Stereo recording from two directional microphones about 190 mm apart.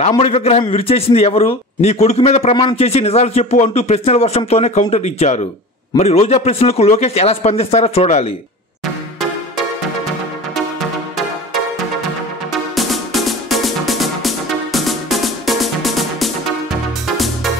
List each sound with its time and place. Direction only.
0.2 s speech: 35° left (ahead or behind)
12.7 s music: centre (ahead or behind)